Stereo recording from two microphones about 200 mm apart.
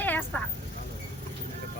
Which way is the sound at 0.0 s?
10° left (ahead or behind).